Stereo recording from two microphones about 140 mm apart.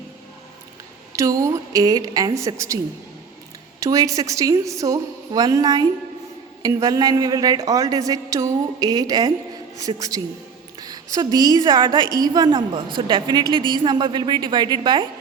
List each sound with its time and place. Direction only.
1.1 s a woman's voice: 25° right (ahead or behind)
3.8 s a woman's voice: 25° right (ahead or behind)